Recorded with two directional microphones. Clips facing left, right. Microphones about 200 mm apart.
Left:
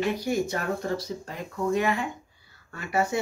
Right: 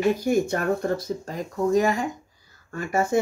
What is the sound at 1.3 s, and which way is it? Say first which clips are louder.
Speech: right 5 dB; 40° right (ahead or behind).